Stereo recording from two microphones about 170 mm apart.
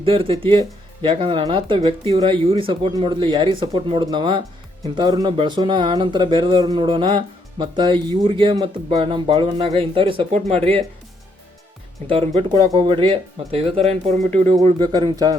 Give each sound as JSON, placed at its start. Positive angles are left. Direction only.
{"t": 0.0, "sound": "speech", "side_deg": -35}
{"t": 12.0, "sound": "speech", "side_deg": -30}
{"t": 14.8, "sound": "speech", "side_deg": -25}